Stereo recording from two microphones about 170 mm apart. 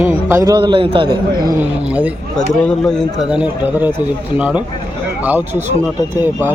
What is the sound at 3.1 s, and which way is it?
Speech, 5° right (ahead or behind).